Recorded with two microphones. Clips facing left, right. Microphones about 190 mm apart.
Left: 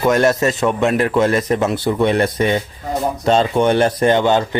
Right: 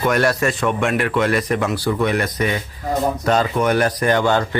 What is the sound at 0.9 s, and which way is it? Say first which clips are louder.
Speech: left 4 dB; 35° left (ahead or behind).